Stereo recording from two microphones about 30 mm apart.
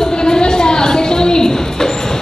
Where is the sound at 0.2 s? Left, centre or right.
Left.